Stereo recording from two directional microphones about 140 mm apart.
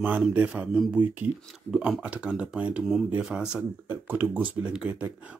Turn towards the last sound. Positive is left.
turn(degrees=-10)  # may be behind; listen again after turning